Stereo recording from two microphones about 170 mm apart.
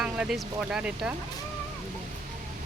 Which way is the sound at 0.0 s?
5° right (ahead or behind).